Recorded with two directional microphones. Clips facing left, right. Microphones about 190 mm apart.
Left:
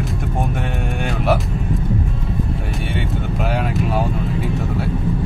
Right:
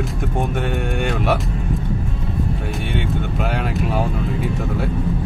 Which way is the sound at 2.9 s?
Centre (ahead or behind).